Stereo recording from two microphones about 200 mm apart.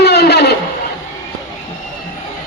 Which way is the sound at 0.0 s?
55° left (ahead or behind).